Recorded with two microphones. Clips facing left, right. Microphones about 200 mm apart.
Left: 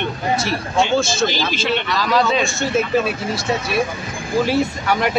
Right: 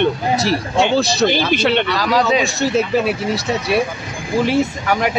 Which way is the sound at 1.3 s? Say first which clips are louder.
Right 5 dB; 60° right (ahead or behind).